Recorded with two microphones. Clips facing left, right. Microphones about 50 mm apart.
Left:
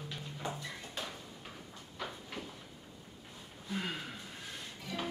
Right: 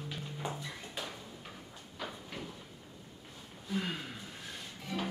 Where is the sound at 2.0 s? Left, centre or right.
Centre.